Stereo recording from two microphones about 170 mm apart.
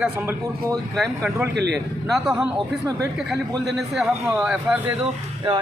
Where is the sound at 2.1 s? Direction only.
5° right (ahead or behind).